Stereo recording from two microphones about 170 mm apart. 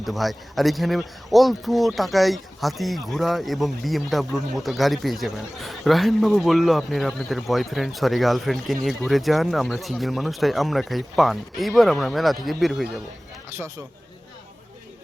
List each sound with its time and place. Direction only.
0.0 s speech: centre (ahead or behind)